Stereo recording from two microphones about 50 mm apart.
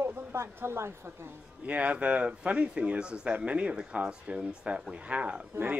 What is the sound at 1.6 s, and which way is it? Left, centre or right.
Speech, right.